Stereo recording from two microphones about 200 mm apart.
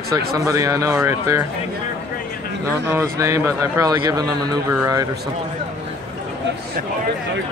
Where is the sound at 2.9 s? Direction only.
15° right (ahead or behind).